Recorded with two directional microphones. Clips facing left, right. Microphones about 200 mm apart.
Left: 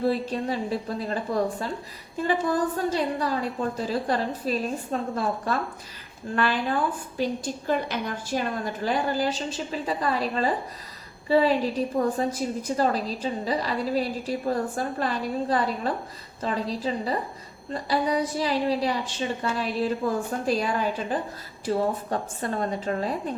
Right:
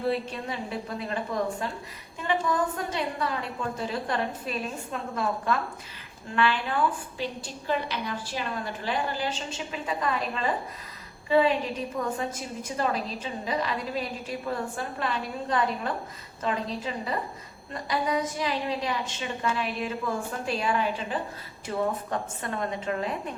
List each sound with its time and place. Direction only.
0.1 s a woman's voice: 35° left (ahead or behind)